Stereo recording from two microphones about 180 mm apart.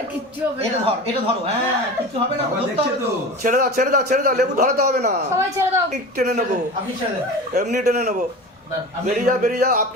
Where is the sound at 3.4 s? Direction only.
50° right (ahead or behind).